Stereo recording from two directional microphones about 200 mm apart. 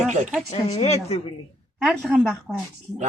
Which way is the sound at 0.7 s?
30° left (ahead or behind).